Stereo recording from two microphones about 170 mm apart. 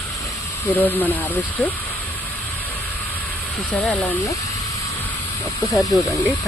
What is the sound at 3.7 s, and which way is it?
Speech, 10° left (ahead or behind).